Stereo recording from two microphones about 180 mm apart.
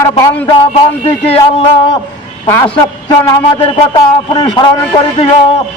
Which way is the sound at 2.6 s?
25° left (ahead or behind).